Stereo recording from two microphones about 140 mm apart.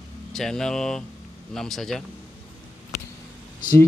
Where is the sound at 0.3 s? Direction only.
5° left (ahead or behind).